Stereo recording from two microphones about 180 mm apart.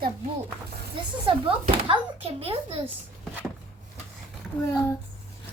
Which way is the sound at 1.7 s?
30° right (ahead or behind).